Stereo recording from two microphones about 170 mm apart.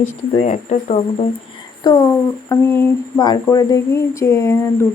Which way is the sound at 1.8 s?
20° left (ahead or behind).